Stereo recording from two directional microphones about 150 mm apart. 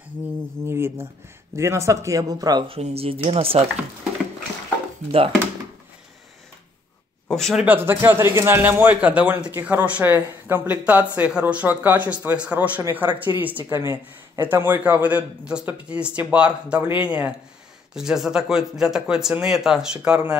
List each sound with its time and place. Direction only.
0.7 s speech: 15° right (ahead or behind)
2.7 s speech: 40° right (ahead or behind)
7.2 s speech: centre (ahead or behind)
7.6 s a man's voice: 15° right (ahead or behind)